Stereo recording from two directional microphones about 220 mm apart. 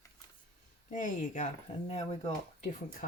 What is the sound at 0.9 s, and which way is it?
Speech, 35° left (ahead or behind).